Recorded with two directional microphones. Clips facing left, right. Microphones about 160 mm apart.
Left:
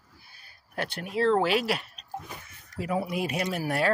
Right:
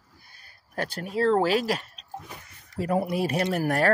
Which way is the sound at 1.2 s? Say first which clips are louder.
Right 1 dB; 40° right (ahead or behind).